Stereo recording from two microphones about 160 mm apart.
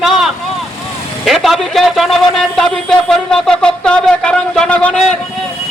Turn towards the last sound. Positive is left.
turn(degrees=5)  # may be behind; listen again after turning